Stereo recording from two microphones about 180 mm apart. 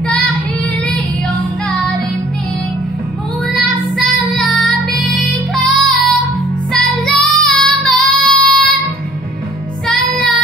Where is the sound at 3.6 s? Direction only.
Centre (ahead or behind).